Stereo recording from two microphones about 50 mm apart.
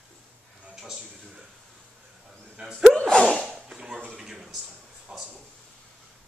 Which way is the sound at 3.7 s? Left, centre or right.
Centre.